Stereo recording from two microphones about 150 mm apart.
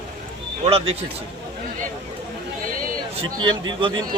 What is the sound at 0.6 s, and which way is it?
Speech, 40° right (ahead or behind).